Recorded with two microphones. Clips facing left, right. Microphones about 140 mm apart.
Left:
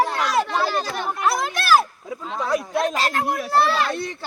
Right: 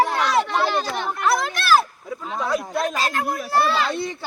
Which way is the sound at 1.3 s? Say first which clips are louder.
Right 2 dB; 45° left (ahead or behind).